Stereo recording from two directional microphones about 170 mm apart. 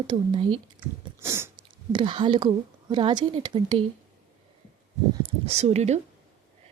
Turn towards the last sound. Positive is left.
turn(degrees=-40)  # may be behind; listen again after turning